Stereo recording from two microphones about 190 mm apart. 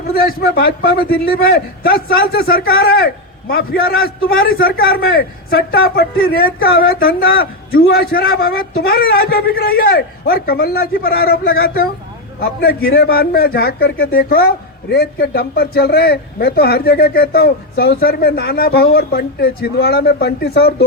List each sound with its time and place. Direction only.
0.2 s a man's voice: 50° left (ahead or behind)